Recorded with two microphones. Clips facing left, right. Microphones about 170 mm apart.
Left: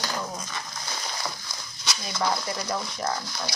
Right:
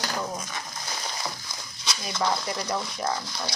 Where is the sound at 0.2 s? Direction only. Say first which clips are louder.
Right 2 dB; 15° right (ahead or behind).